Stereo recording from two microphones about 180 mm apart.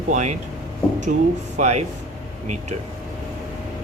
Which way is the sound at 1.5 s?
40° right (ahead or behind).